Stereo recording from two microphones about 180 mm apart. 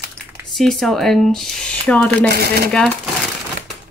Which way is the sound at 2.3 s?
60° right (ahead or behind).